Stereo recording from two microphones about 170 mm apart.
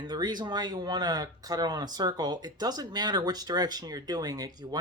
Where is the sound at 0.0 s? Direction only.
25° right (ahead or behind).